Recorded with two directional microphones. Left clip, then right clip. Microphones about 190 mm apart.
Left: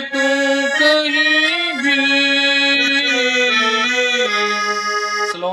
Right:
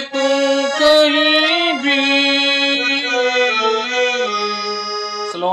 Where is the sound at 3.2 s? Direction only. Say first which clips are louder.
Even; 40° left (ahead or behind).